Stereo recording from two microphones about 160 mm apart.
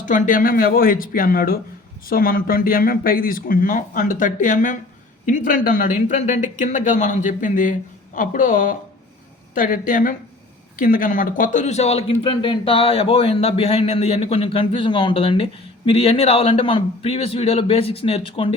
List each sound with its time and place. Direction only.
0.0 s speech: 55° left (ahead or behind); by 18.5 s 35° left (ahead or behind)